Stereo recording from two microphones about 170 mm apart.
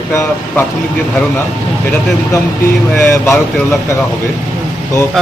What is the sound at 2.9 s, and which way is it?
Speech, 15° left (ahead or behind).